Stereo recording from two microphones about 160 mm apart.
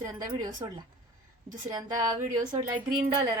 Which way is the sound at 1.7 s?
25° right (ahead or behind).